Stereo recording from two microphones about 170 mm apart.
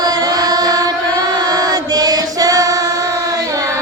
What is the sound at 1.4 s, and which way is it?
Chant, 20° right (ahead or behind).